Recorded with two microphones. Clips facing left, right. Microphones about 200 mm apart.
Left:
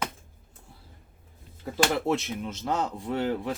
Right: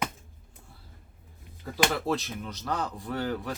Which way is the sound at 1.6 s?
20° left (ahead or behind).